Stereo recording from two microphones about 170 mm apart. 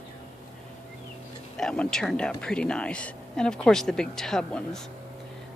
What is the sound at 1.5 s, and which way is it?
Speech, 5° left (ahead or behind).